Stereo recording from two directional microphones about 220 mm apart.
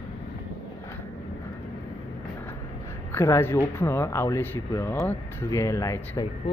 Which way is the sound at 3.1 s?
10° left (ahead or behind).